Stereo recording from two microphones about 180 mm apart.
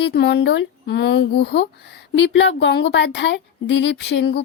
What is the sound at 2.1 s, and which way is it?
Speech, 85° left.